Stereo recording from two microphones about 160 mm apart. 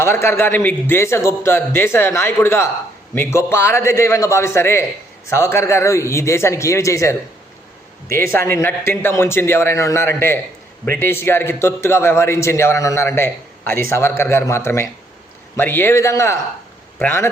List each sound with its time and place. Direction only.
0.0 s a man's voice: 15° left (ahead or behind)